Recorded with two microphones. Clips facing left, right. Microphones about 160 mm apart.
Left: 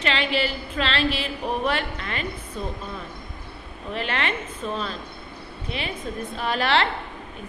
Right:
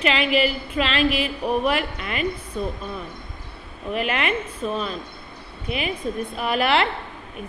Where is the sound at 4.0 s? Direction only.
30° left (ahead or behind).